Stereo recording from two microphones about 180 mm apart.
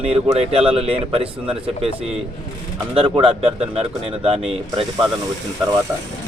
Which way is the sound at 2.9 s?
30° right (ahead or behind).